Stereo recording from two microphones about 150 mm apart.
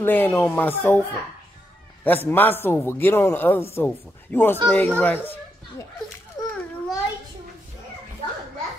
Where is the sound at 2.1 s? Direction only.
15° left (ahead or behind).